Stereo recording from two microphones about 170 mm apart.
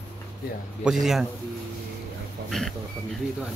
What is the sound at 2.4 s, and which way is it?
Speech, centre (ahead or behind).